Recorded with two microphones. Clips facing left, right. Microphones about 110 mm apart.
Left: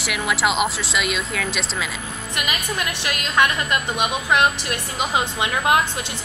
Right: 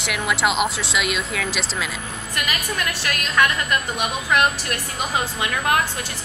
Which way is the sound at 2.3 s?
20° left (ahead or behind).